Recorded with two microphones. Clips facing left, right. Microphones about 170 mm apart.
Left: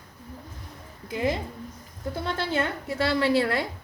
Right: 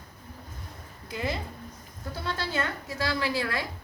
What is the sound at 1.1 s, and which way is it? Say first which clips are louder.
Speech: left 5 dB; 15° left (ahead or behind).